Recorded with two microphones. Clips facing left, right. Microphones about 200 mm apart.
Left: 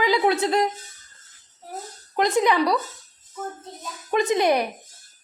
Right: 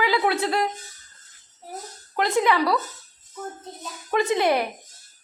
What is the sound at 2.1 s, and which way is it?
Speech, 20° left (ahead or behind).